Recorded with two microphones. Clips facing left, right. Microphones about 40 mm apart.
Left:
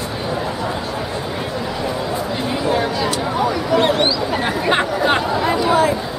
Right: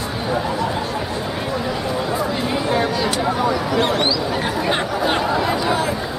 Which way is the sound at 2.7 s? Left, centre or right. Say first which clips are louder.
Left 1 dB; centre.